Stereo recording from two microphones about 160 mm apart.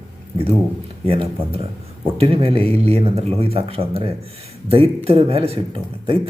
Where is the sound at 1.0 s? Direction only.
35° right (ahead or behind).